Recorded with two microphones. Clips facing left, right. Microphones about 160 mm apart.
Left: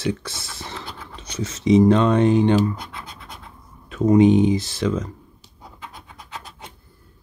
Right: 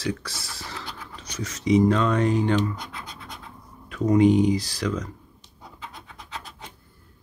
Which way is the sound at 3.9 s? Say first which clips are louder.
Left 4 dB; 25° left (ahead or behind).